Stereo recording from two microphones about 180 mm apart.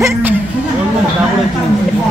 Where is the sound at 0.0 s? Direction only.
10° right (ahead or behind).